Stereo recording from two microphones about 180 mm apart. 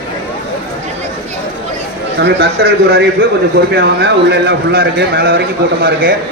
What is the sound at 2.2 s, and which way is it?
Speech, 65° right (ahead or behind).